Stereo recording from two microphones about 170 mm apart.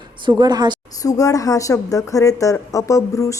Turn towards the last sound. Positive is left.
turn(degrees=20)  # may be behind; listen again after turning